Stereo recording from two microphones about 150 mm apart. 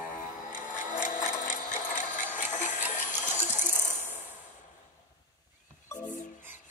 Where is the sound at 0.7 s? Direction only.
60° left (ahead or behind).